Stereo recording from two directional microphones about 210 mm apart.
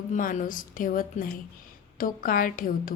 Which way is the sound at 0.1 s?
40° left (ahead or behind).